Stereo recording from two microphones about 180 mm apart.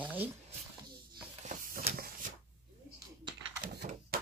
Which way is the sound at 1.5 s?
45° right (ahead or behind).